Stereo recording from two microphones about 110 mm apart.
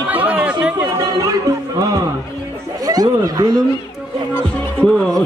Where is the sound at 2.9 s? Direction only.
35° right (ahead or behind).